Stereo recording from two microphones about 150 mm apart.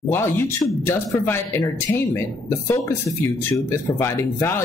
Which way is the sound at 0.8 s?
15° left (ahead or behind).